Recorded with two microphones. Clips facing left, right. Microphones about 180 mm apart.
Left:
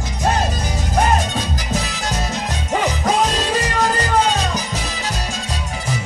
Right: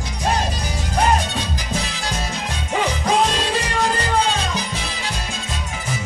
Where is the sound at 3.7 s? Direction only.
45° left (ahead or behind).